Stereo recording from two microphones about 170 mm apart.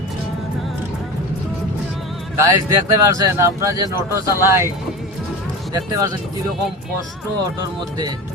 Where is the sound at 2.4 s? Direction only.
20° right (ahead or behind).